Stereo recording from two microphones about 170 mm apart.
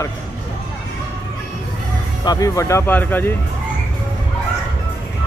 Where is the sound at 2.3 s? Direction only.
20° left (ahead or behind).